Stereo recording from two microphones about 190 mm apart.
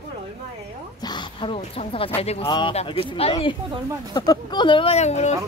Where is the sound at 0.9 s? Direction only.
25° left (ahead or behind).